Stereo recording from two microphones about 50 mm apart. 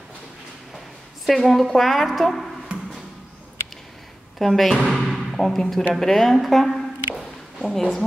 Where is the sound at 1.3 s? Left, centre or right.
Centre.